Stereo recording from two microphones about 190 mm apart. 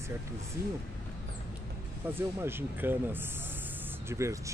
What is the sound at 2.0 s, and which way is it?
Speech, 10° right (ahead or behind).